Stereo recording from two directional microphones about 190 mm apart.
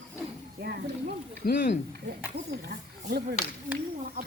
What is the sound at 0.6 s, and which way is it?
Speech, 60° right (ahead or behind).